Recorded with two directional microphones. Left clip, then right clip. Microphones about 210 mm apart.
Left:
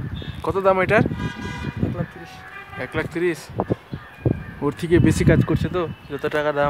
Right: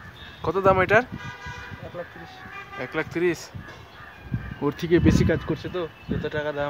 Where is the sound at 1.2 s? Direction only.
50° left (ahead or behind).